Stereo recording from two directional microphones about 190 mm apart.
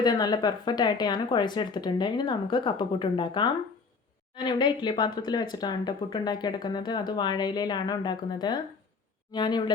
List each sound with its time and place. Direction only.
0.0 s speech: 20° left (ahead or behind)